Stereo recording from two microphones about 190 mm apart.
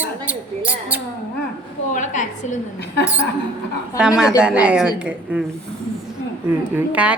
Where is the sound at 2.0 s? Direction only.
40° left (ahead or behind).